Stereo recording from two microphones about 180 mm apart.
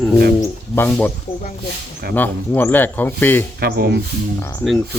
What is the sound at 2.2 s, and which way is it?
Speech, 10° left (ahead or behind).